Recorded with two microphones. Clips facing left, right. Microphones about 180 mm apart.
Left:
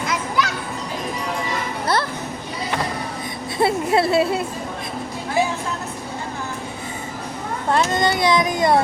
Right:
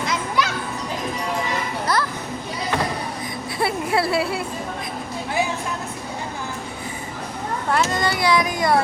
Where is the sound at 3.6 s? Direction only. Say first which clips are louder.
Left 4 dB; 25° left (ahead or behind).